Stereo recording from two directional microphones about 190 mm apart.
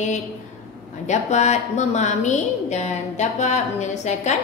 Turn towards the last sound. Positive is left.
turn(degrees=40)  # may be behind; listen again after turning